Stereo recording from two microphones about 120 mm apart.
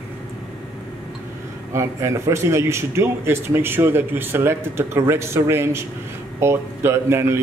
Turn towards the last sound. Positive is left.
turn(degrees=-20)  # may be behind; listen again after turning